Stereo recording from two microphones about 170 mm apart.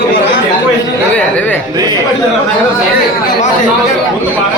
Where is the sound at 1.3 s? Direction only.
10° left (ahead or behind).